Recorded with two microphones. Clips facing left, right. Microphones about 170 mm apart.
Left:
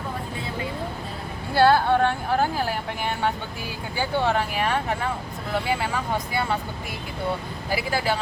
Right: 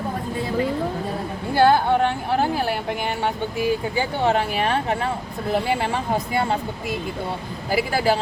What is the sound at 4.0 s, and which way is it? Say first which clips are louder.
Speech: left 2 dB; 20° right (ahead or behind).